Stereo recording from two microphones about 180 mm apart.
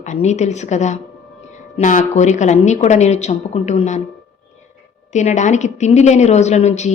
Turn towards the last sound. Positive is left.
turn(degrees=40)  # may be behind; listen again after turning